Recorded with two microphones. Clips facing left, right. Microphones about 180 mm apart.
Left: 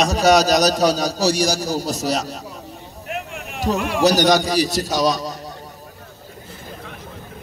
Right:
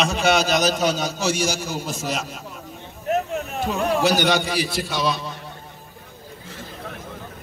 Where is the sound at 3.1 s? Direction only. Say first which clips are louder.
Right 7 dB; 40° right (ahead or behind).